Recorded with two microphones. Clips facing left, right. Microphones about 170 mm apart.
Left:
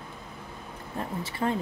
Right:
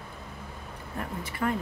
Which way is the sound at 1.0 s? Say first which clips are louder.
Left 2 dB; 25° left (ahead or behind).